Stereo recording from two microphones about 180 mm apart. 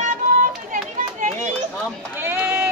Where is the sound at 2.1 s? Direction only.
10° right (ahead or behind).